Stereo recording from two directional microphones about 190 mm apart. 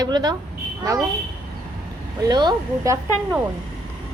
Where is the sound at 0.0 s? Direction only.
20° right (ahead or behind).